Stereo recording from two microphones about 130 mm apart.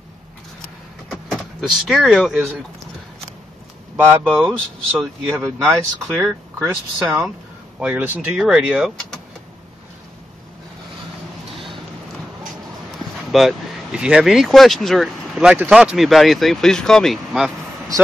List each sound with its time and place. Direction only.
1.1 s speech: centre (ahead or behind)
3.9 s a sound: 20° right (ahead or behind)
4.4 s speech: 5° right (ahead or behind)
7.8 s speech: 10° right (ahead or behind)
11.5 s a sound: centre (ahead or behind)
13.3 s speech: centre (ahead or behind)